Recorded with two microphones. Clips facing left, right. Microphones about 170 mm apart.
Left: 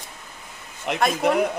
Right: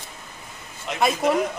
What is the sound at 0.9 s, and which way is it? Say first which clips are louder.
Speech: left 4 dB; 65° left (ahead or behind).